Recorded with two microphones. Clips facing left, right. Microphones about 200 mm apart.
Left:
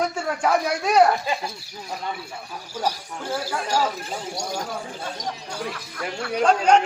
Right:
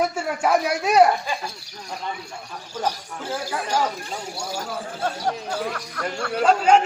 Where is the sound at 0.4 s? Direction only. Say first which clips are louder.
Right 1 dB; 5° right (ahead or behind).